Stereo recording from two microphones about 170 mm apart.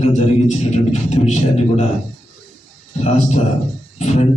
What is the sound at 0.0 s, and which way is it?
A man's voice, 40° left (ahead or behind).